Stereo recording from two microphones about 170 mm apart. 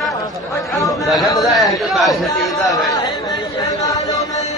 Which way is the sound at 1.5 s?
Centre (ahead or behind).